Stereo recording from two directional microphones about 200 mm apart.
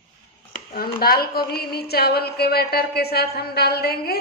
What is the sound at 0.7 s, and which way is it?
A woman's voice, 50° left (ahead or behind).